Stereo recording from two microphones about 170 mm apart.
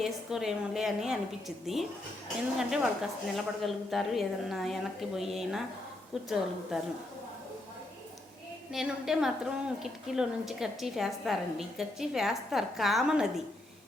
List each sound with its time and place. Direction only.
0.0 s a woman's voice: centre (ahead or behind)
8.7 s a woman's voice: centre (ahead or behind)